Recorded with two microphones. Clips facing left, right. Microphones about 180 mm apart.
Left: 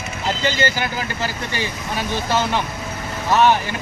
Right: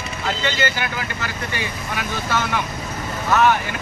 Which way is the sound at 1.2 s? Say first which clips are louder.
Left 2 dB; 30° left (ahead or behind).